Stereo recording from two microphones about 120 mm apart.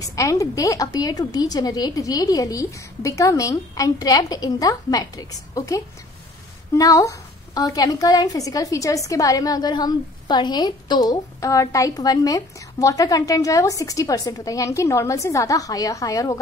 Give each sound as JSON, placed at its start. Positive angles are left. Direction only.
{"t": 0.0, "sound": "a woman's voice", "side_deg": 30}